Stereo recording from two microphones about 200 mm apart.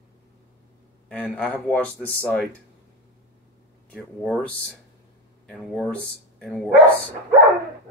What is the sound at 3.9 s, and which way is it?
Speech, 5° left (ahead or behind).